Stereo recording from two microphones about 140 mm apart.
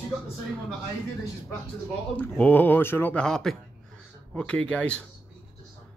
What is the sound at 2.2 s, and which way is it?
Speech, 10° left (ahead or behind).